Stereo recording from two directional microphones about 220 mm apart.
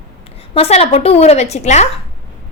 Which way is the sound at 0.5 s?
25° left (ahead or behind).